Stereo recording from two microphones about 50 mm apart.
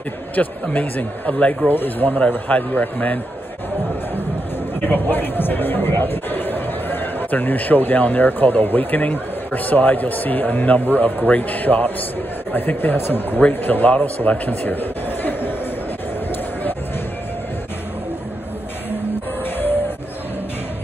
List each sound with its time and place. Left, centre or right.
0.4 s a man's voice: left
4.8 s a man's voice: left